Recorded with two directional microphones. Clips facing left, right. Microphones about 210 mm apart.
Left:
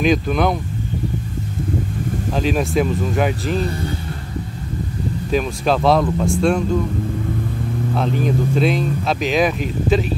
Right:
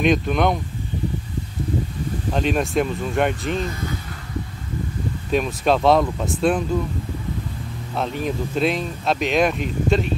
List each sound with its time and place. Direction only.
0.0 s speech: centre (ahead or behind)
2.3 s speech: centre (ahead or behind)
3.5 s speech: 35° left (ahead or behind)
5.3 s speech: centre (ahead or behind)
7.9 s speech: centre (ahead or behind)